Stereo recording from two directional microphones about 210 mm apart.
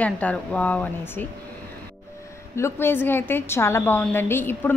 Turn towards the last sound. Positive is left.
turn(degrees=10)  # may be behind; listen again after turning